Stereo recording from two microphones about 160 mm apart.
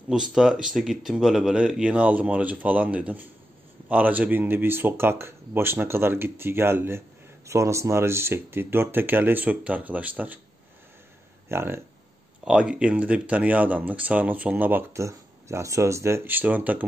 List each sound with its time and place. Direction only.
0.1 s speech: 5° right (ahead or behind)
11.4 s speech: 15° right (ahead or behind)